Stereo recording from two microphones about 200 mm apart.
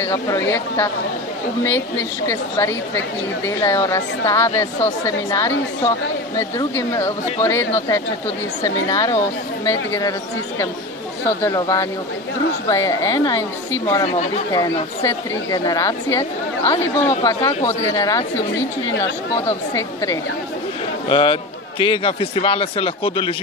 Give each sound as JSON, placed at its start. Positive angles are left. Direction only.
{"t": 0.0, "sound": "a woman's voice", "side_deg": 10}
{"t": 11.2, "sound": "a woman's voice", "side_deg": 15}
{"t": 14.0, "sound": "speech", "side_deg": 30}
{"t": 14.5, "sound": "a woman's voice", "side_deg": 20}
{"t": 17.4, "sound": "speech", "side_deg": 30}
{"t": 17.9, "sound": "a woman's voice", "side_deg": 15}
{"t": 19.4, "sound": "a woman's voice", "side_deg": 15}
{"t": 21.1, "sound": "a man's voice", "side_deg": 25}